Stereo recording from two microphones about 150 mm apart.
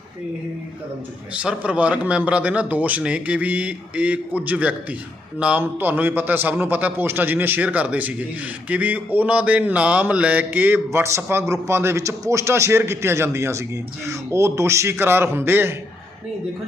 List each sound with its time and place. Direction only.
1.3 s mantra: 10° right (ahead or behind)